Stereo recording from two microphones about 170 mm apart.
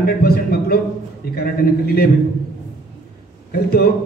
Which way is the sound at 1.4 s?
65° left (ahead or behind).